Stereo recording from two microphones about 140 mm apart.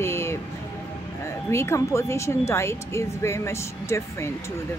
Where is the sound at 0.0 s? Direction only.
20° left (ahead or behind).